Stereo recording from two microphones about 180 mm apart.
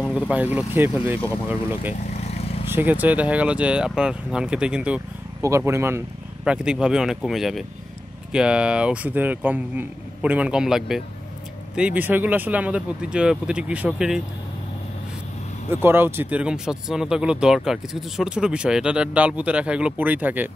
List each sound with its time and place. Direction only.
0.3 s speech: 10° right (ahead or behind)
2.0 s vehicle: 35° left (ahead or behind)
2.7 s speech: 10° right (ahead or behind)
15.7 s speech: 10° right (ahead or behind)